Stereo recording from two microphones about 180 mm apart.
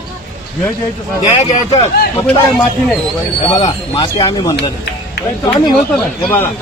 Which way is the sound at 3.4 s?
30° left (ahead or behind).